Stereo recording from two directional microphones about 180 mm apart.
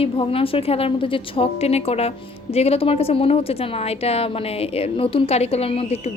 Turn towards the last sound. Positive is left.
turn(degrees=35)  # may be behind; listen again after turning